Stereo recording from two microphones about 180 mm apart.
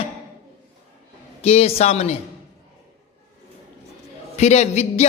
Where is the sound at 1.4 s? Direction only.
35° left (ahead or behind).